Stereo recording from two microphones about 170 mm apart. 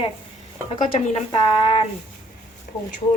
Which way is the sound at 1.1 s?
35° left (ahead or behind).